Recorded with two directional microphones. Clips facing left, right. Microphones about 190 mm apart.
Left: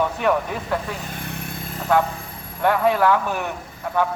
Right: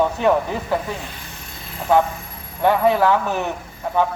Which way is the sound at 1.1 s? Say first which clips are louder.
Left 7 dB; 60° left (ahead or behind).